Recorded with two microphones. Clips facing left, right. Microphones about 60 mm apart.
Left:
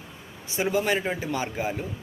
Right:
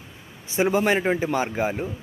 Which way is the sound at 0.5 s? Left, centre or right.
Right.